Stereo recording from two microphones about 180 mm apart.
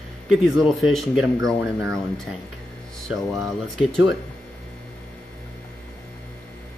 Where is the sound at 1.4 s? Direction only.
15° right (ahead or behind).